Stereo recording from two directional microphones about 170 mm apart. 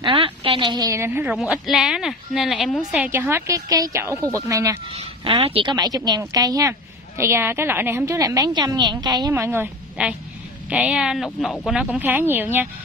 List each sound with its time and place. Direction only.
0.0 s speech: 30° right (ahead or behind); by 1.2 s 15° right (ahead or behind)
1.2 s a woman's voice: 5° right (ahead or behind)
5.2 s a woman's voice: 35° right (ahead or behind); by 12.6 s 10° right (ahead or behind)